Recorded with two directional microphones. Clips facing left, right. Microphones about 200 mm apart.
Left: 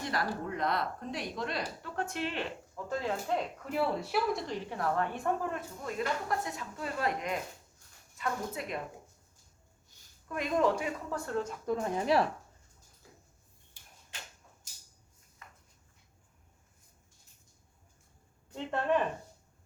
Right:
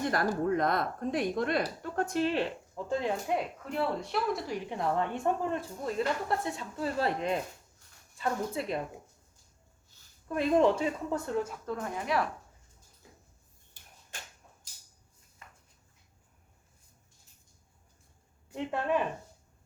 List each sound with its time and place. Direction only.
0.0 s speech: 50° right (ahead or behind)
2.7 s speech: 20° right (ahead or behind)
3.6 s speech: 5° left (ahead or behind)
4.5 s speech: 15° right (ahead or behind)
10.2 s speech: 30° right (ahead or behind)
11.6 s speech: 15° left (ahead or behind)
11.9 s speech: 30° left (ahead or behind)
14.1 s a sound: 45° right (ahead or behind)
18.5 s speech: 5° right (ahead or behind)